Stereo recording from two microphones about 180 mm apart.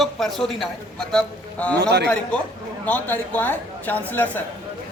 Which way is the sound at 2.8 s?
10° left (ahead or behind).